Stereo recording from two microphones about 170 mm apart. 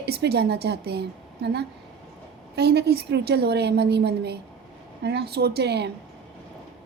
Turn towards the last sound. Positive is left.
turn(degrees=-75)  # may be behind; listen again after turning